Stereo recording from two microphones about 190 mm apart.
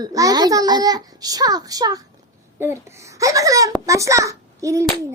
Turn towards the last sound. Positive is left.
turn(degrees=-15)  # may be behind; listen again after turning